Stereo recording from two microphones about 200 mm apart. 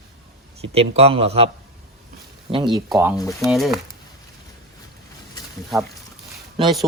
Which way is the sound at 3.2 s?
15° left (ahead or behind).